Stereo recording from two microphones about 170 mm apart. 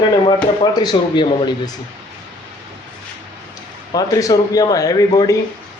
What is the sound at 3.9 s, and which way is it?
Speech, 20° left (ahead or behind).